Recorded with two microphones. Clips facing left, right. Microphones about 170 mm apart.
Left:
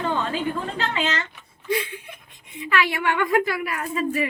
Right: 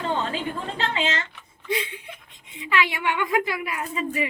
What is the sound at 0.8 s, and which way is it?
A woman's voice, 25° right (ahead or behind).